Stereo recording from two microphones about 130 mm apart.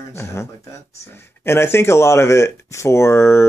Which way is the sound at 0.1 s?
20° left (ahead or behind).